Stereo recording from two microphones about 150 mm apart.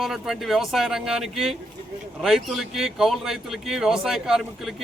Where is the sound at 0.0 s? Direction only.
Centre (ahead or behind).